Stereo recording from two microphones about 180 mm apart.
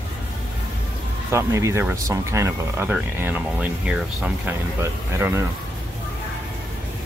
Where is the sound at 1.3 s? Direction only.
15° right (ahead or behind).